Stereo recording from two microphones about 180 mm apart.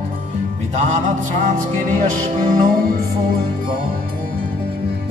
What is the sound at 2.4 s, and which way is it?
Music, 50° right (ahead or behind).